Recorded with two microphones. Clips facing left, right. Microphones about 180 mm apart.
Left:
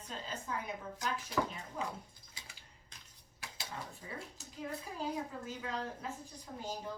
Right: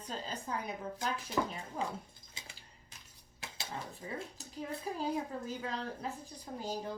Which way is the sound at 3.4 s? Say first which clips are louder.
Right 2 dB; 20° right (ahead or behind).